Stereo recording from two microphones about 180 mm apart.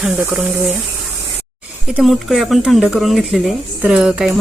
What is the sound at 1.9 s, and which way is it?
Speech, centre (ahead or behind).